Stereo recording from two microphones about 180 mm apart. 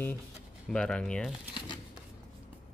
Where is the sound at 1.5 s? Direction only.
25° left (ahead or behind).